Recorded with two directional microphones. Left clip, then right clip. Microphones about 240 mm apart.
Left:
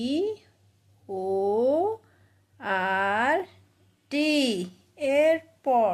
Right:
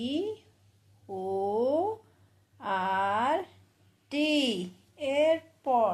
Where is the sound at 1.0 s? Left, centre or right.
Left.